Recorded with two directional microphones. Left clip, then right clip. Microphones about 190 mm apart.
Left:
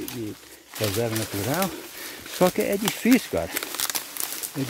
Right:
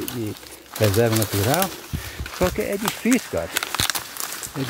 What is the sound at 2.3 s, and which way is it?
Speech, 30° left (ahead or behind).